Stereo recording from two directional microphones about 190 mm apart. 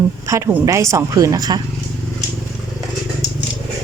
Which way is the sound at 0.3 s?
15° right (ahead or behind).